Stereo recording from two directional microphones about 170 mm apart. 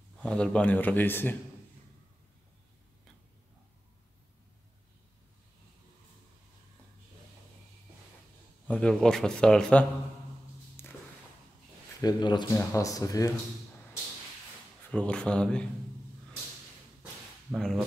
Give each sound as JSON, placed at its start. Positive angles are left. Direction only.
{"t": 0.2, "sound": "a man's voice", "side_deg": 5}
{"t": 8.6, "sound": "speech", "side_deg": 5}
{"t": 10.8, "sound": "music", "side_deg": 15}
{"t": 12.0, "sound": "speech", "side_deg": 25}
{"t": 14.9, "sound": "speech", "side_deg": 5}
{"t": 17.5, "sound": "speech", "side_deg": 0}